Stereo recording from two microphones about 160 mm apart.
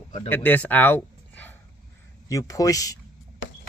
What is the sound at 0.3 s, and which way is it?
Speech, 10° left (ahead or behind).